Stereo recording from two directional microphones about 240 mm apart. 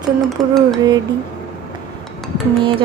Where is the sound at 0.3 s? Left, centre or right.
Centre.